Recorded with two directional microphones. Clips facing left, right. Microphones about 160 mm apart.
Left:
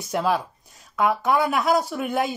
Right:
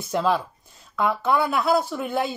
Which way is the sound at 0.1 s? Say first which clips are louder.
Right 1 dB; 10° left (ahead or behind).